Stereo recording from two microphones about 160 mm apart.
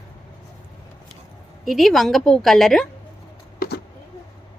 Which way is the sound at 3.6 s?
85° left.